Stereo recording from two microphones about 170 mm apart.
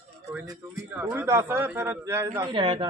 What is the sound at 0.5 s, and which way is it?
A man's voice, 15° right (ahead or behind).